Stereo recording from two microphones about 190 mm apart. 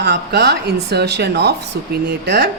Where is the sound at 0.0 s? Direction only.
60° right (ahead or behind).